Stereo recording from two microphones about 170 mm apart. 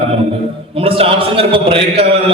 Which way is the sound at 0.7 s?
35° right (ahead or behind).